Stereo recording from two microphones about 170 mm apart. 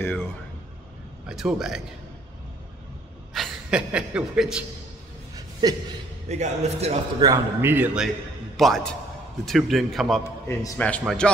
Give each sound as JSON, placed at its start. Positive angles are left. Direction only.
{"t": 1.2, "sound": "a man's voice", "side_deg": -5}
{"t": 3.3, "sound": "speech", "side_deg": -5}
{"t": 5.6, "sound": "a sound", "side_deg": -25}
{"t": 6.2, "sound": "a man's voice", "side_deg": -40}
{"t": 7.2, "sound": "a man's voice", "side_deg": -20}
{"t": 10.2, "sound": "a man's voice", "side_deg": 15}